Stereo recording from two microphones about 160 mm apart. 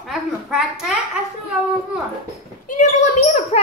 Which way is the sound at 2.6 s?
50° left (ahead or behind).